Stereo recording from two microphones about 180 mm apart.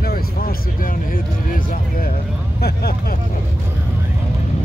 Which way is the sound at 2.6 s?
60° left (ahead or behind).